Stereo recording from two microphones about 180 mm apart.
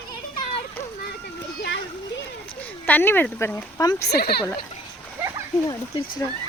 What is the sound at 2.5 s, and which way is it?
Speech, 10° left (ahead or behind).